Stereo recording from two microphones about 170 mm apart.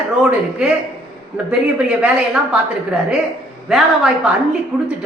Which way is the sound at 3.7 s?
5° right (ahead or behind).